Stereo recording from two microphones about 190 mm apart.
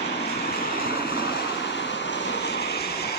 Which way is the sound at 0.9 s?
55° left (ahead or behind).